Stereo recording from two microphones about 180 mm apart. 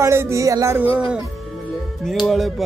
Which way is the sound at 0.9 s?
5° right (ahead or behind).